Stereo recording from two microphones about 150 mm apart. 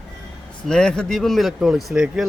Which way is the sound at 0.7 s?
5° left (ahead or behind).